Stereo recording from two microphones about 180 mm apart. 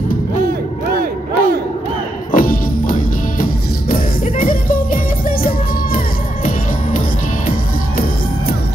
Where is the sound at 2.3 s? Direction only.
50° left (ahead or behind).